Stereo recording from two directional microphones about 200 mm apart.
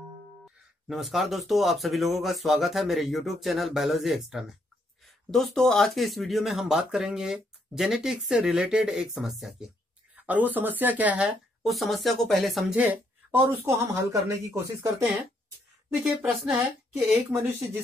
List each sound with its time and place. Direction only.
0.8 s speech: centre (ahead or behind)
16.3 s speech: centre (ahead or behind)
17.3 s speech: 10° right (ahead or behind)